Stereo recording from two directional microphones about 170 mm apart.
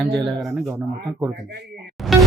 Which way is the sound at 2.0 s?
Centre (ahead or behind).